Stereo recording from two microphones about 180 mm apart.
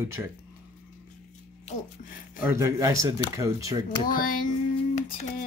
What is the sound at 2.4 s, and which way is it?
Speech, 15° right (ahead or behind).